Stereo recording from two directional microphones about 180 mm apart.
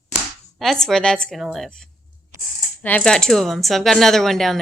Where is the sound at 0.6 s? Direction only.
Centre (ahead or behind).